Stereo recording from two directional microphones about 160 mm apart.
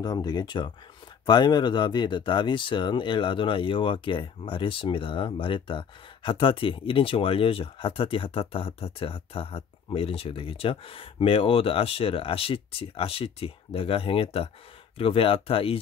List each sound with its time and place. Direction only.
0.0 s speech: 25° left (ahead or behind)